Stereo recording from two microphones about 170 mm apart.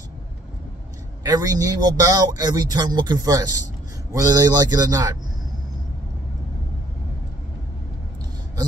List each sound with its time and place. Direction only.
1.2 s speech: 20° right (ahead or behind)